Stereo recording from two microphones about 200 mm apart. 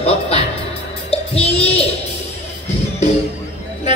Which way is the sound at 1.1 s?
30° left (ahead or behind).